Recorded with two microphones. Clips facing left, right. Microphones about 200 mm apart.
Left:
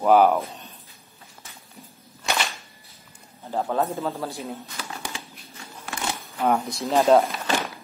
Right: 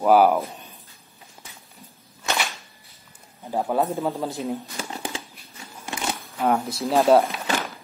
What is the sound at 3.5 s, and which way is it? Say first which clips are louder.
Speech: right 2 dB; 10° right (ahead or behind).